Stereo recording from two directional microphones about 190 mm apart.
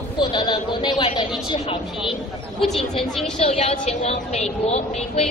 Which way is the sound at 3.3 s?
35° left (ahead or behind).